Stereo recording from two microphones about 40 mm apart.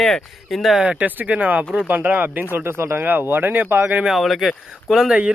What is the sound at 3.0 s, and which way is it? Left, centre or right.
Speech, right.